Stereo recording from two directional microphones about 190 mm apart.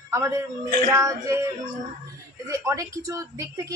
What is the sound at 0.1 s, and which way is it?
A man's voice, 15° right (ahead or behind).